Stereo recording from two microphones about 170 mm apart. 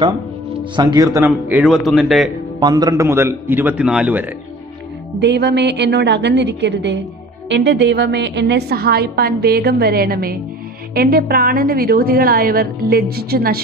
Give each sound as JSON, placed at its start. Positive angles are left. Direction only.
{"t": 0.7, "sound": "a man's voice", "side_deg": -25}
{"t": 2.6, "sound": "a man's voice", "side_deg": -20}
{"t": 5.2, "sound": "a woman's voice", "side_deg": -90}